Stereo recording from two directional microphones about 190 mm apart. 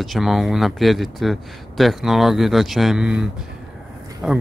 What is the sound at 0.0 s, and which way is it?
Speech, centre (ahead or behind).